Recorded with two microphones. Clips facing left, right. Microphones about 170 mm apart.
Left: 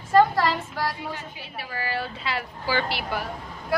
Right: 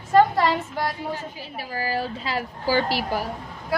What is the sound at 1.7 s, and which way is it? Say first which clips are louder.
A woman's voice: right 4 dB; 35° right (ahead or behind).